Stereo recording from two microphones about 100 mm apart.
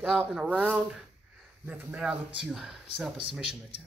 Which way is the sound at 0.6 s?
15° right (ahead or behind).